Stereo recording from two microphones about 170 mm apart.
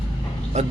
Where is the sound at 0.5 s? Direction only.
40° right (ahead or behind).